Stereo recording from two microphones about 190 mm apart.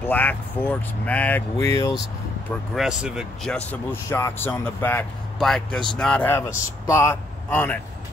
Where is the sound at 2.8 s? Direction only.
5° right (ahead or behind).